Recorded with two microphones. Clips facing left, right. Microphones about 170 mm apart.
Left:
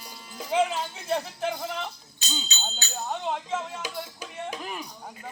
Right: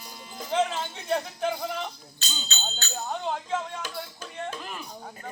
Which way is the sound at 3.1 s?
5° left (ahead or behind).